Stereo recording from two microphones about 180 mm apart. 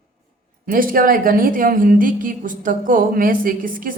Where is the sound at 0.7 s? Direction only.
50° right (ahead or behind).